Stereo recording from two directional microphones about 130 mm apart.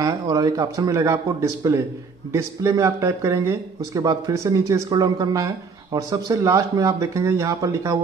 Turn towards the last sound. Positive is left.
turn(degrees=-25)  # may be behind; listen again after turning